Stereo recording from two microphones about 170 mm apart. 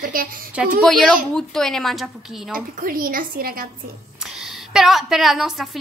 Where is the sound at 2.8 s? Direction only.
55° right (ahead or behind).